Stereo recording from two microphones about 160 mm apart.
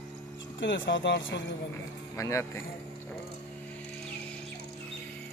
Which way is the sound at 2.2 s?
20° left (ahead or behind).